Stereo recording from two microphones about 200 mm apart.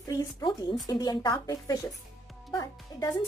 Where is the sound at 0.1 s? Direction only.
20° left (ahead or behind).